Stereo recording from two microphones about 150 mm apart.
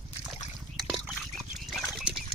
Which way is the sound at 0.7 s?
Centre (ahead or behind).